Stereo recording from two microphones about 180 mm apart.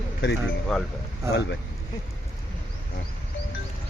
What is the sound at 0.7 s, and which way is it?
Speech, centre (ahead or behind).